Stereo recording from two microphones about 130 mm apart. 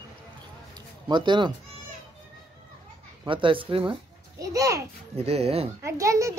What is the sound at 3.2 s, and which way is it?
Speech, 40° right (ahead or behind).